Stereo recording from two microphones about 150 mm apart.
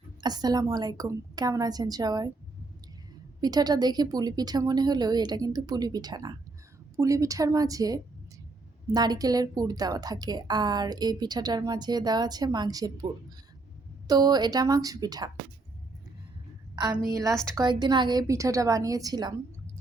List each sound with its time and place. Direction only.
0.2 s a woman's voice: 25° right (ahead or behind)
3.4 s a woman's voice: 25° right (ahead or behind)
14.1 s a woman's voice: 25° right (ahead or behind)
16.7 s a woman's voice: 30° right (ahead or behind)